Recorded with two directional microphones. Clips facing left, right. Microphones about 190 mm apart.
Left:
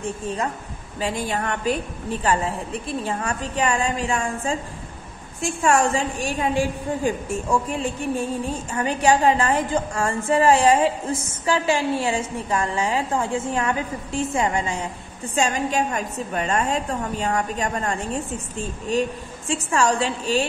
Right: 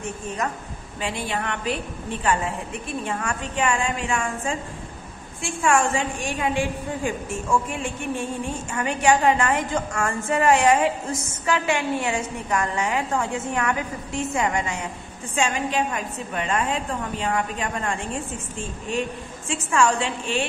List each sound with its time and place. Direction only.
1.0 s a woman's voice: 40° left (ahead or behind)